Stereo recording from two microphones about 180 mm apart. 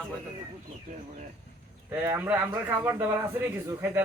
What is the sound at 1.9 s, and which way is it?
Speech, 10° right (ahead or behind).